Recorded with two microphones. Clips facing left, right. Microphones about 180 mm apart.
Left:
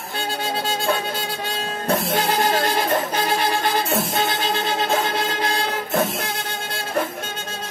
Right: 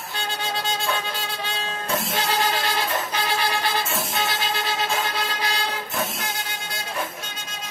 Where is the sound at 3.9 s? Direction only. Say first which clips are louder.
Left 5 dB; 55° left (ahead or behind).